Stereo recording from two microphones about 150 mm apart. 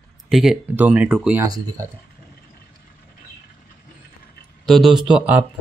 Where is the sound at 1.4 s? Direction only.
20° right (ahead or behind).